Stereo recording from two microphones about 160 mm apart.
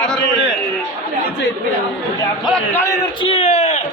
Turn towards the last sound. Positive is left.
turn(degrees=45)  # may be behind; listen again after turning